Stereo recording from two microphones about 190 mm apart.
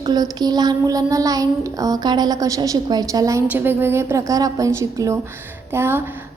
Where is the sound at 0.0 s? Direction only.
20° right (ahead or behind).